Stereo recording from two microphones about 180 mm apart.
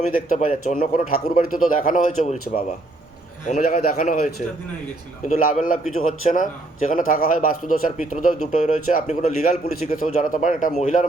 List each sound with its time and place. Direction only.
0.1 s a man's voice: 50° left (ahead or behind)
3.6 s a man's voice: 55° left (ahead or behind)